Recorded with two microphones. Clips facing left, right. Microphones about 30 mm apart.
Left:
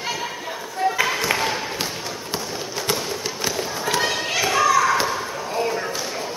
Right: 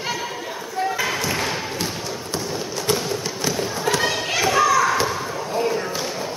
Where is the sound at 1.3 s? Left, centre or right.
Centre.